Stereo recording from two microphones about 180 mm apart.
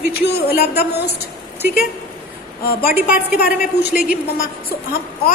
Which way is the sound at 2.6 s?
55° left (ahead or behind).